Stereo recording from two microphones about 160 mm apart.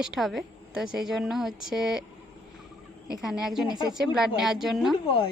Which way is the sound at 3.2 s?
Centre (ahead or behind).